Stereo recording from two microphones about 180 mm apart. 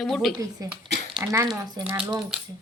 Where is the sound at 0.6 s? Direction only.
20° right (ahead or behind).